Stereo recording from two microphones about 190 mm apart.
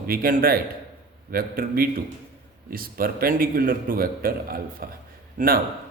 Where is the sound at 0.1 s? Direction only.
50° right (ahead or behind).